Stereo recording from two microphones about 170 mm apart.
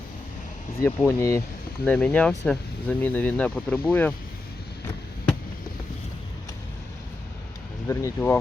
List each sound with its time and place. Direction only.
0.8 s speech: 15° left (ahead or behind)
7.9 s speech: 15° left (ahead or behind)